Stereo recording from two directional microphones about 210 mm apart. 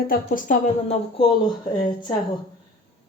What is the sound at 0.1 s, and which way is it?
Speech, 40° left (ahead or behind).